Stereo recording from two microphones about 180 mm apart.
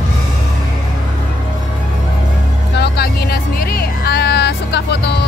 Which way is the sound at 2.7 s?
65° left (ahead or behind).